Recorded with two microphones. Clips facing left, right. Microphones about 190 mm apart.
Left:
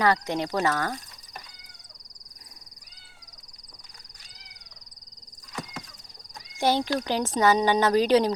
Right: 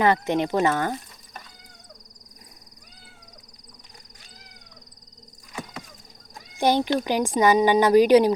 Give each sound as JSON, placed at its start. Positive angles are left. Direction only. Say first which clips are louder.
{"t": 0.0, "sound": "speech", "louder": "right 4 dB", "side_deg": -20}
{"t": 6.6, "sound": "speech", "louder": "right 3 dB", "side_deg": -15}